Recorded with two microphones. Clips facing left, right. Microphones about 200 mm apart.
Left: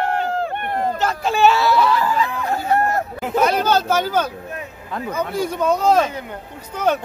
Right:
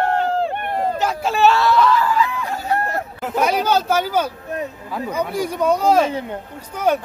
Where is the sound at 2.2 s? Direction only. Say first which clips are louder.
Left 2 dB; 45° left (ahead or behind).